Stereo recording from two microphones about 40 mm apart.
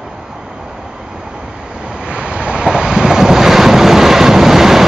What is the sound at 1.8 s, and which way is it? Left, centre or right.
Waves, right.